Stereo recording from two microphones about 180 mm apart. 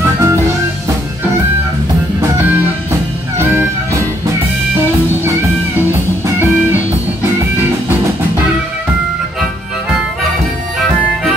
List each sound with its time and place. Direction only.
0.0 s music: 15° right (ahead or behind)